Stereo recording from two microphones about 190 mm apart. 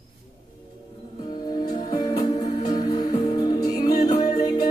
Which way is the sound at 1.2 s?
25° left (ahead or behind).